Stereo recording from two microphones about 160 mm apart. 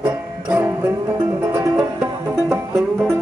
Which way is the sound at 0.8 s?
25° right (ahead or behind).